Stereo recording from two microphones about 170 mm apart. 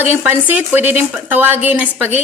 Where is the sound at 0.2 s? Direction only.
10° right (ahead or behind).